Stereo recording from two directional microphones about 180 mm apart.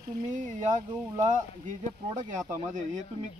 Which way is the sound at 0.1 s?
45° right (ahead or behind).